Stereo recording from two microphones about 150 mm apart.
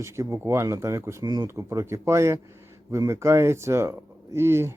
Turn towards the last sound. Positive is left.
turn(degrees=-15)  # may be behind; listen again after turning